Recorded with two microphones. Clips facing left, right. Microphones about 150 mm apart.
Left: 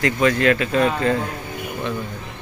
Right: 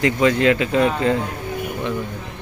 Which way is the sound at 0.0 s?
20° right (ahead or behind).